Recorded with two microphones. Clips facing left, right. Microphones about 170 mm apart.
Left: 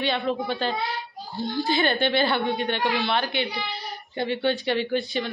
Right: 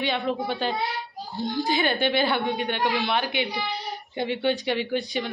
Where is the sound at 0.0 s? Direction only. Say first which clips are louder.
Left 1 dB; 10° right (ahead or behind).